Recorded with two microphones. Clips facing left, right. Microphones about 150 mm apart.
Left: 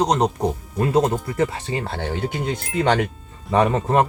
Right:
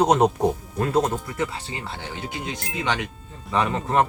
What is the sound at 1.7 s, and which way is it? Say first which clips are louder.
Speech: left 8 dB; 50° left (ahead or behind).